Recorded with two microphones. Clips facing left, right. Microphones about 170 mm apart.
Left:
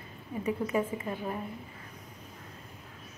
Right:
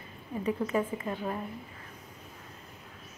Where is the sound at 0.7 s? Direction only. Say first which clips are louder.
Even; 15° left (ahead or behind).